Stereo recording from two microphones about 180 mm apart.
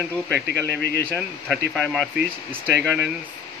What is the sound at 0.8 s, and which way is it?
Speech, 60° left (ahead or behind).